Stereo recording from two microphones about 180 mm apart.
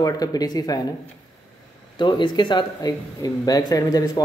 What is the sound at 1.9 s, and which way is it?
Speech, 25° left (ahead or behind).